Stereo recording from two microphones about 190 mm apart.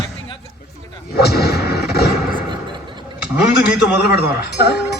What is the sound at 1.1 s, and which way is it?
Artillery fire, 55° left (ahead or behind).